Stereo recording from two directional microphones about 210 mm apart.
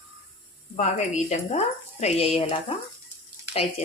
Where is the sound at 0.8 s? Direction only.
35° left (ahead or behind).